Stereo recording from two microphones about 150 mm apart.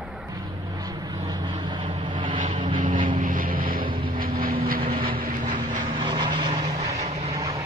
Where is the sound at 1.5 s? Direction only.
30° right (ahead or behind).